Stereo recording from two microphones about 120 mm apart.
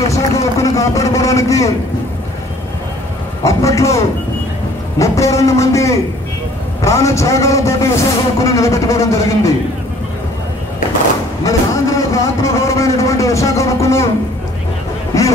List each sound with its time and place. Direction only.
0.1 s a sound: 25° left (ahead or behind)
3.4 s a man's voice: 25° left (ahead or behind)
11.4 s a man's voice: 25° left (ahead or behind)